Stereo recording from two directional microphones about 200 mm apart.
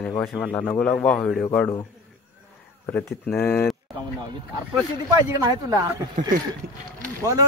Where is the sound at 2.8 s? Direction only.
10° left (ahead or behind).